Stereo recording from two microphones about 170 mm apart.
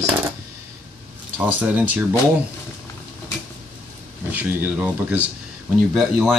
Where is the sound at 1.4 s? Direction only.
10° right (ahead or behind).